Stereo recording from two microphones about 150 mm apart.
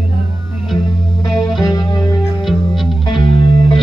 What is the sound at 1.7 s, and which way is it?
Music, 25° left (ahead or behind).